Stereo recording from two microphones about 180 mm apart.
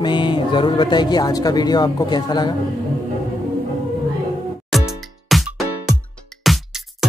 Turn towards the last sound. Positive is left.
turn(degrees=0)  # may be behind; listen again after turning